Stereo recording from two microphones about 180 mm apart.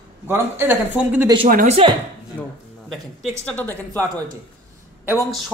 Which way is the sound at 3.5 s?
10° left (ahead or behind).